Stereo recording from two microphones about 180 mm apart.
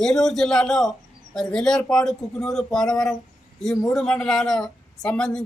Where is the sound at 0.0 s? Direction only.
5° left (ahead or behind).